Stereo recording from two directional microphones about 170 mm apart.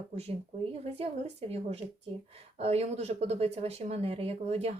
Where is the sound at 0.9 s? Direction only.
35° right (ahead or behind).